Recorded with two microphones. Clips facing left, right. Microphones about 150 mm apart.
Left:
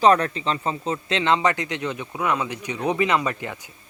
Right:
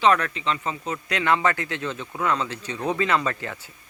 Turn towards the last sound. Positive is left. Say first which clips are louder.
# left 1 dB
turn(degrees=15)  # may be behind; listen again after turning